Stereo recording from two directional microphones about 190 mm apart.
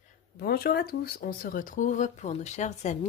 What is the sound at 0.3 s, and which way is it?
Speech, 55° left (ahead or behind).